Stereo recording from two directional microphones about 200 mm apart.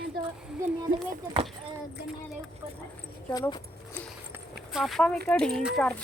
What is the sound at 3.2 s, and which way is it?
Speech, 10° left (ahead or behind).